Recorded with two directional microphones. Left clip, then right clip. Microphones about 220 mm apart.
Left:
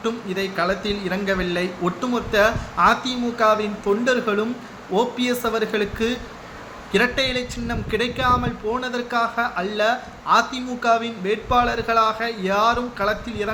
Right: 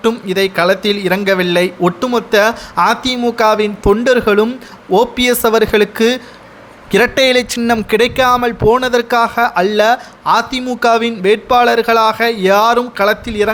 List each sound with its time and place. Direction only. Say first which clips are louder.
0.0 s speech: right 11 dB; 50° right (ahead or behind)